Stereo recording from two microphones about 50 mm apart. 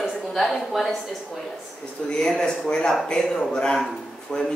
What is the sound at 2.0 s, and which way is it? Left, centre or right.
A man's voice, centre.